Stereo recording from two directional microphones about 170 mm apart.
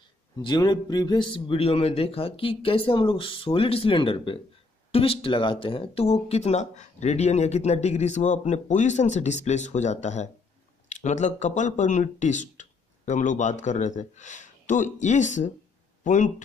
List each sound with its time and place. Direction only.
0.4 s speech: 25° left (ahead or behind); by 16.4 s 45° left (ahead or behind)